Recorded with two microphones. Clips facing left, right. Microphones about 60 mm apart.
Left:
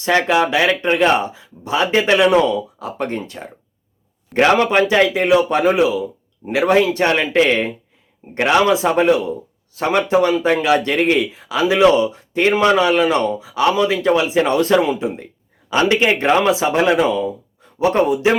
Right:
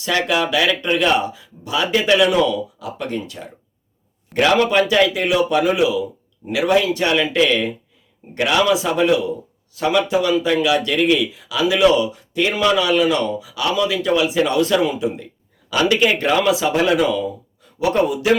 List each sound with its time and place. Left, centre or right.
0.0 s speech: left